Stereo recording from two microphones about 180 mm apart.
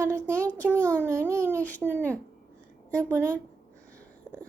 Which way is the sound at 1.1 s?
15° right (ahead or behind).